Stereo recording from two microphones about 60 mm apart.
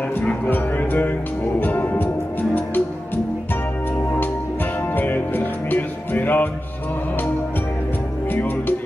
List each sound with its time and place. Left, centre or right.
0.5 s speech: left
1.6 s music: left
4.9 s music: left
8.3 s music: left